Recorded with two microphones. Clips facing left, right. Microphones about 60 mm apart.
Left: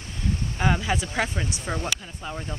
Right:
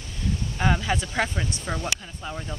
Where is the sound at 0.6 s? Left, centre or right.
Centre.